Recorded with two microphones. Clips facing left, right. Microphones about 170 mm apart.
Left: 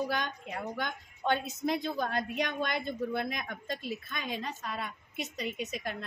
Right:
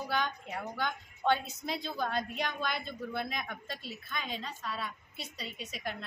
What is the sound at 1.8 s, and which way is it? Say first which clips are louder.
Speech: left 2 dB; 60° left (ahead or behind).